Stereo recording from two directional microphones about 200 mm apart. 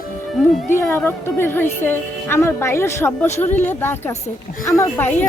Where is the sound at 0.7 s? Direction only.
10° left (ahead or behind).